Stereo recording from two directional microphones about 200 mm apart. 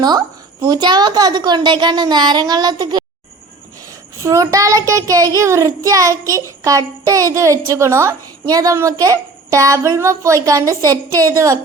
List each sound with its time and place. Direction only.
0.0 s a woman's voice: 20° right (ahead or behind)
4.2 s child singing: 15° right (ahead or behind)